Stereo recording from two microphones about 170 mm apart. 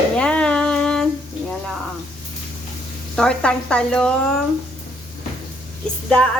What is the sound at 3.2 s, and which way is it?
Frying, 5° left (ahead or behind).